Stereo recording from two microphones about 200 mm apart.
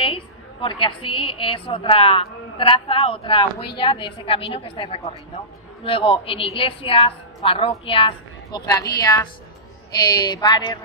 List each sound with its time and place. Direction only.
0.0 s a woman's voice: 25° left (ahead or behind)